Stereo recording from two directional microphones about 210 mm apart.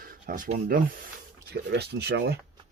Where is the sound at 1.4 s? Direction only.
50° right (ahead or behind).